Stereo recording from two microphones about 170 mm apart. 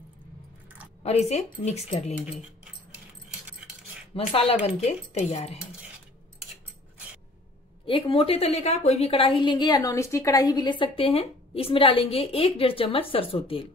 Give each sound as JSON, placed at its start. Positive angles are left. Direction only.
{"t": 1.0, "sound": "a woman's voice", "side_deg": 40}
{"t": 4.1, "sound": "a woman's voice", "side_deg": 35}
{"t": 7.8, "sound": "a woman's voice", "side_deg": 30}